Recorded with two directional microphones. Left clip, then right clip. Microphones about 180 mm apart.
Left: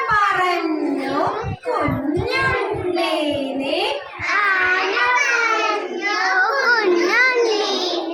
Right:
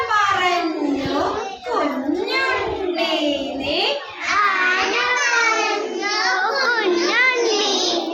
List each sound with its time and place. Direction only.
6.7 s child singing: 15° left (ahead or behind)